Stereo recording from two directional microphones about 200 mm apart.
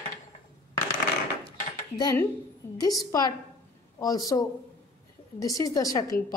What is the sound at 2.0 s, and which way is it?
A woman's voice, 20° left (ahead or behind).